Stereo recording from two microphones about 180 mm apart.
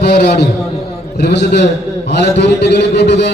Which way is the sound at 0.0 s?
65° left (ahead or behind).